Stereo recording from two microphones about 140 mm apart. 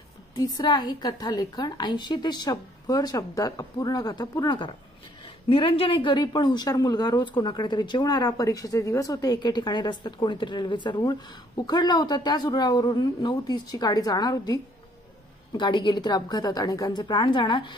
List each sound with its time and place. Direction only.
0.4 s a woman's voice: 25° left (ahead or behind)